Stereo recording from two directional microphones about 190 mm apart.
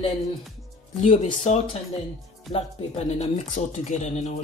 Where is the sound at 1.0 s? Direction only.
35° left (ahead or behind).